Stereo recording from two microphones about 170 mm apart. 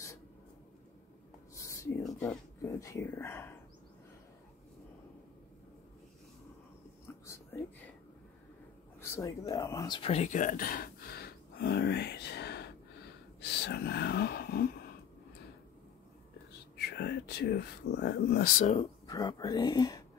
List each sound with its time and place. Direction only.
1.5 s whispering: 20° left (ahead or behind)
2.2 s speech: 20° left (ahead or behind)
7.2 s a sound: 15° left (ahead or behind)
9.0 s speech: 15° left (ahead or behind); by 14.7 s 65° left (ahead or behind)
16.7 s speech: 75° left (ahead or behind)
18.8 s speech: 20° left (ahead or behind)